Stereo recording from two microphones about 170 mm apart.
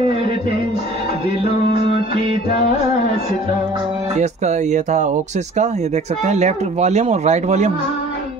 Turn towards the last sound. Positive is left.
turn(degrees=-40)  # may be behind; listen again after turning